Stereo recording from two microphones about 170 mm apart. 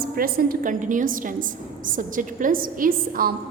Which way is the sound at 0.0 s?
60° right (ahead or behind).